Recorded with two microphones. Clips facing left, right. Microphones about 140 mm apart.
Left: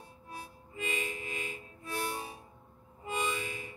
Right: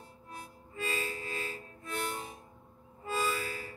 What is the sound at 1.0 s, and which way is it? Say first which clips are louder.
Music: right 1 dB; 20° left (ahead or behind).